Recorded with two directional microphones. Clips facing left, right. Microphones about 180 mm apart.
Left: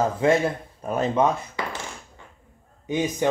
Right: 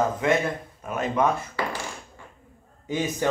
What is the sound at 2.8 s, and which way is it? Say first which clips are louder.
Speech: left 2 dB; 15° left (ahead or behind).